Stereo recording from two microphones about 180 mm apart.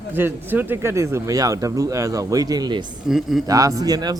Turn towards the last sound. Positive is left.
turn(degrees=-20)  # may be behind; listen again after turning